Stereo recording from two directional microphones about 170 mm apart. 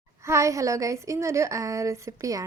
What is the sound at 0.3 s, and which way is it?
A woman's voice, 15° right (ahead or behind).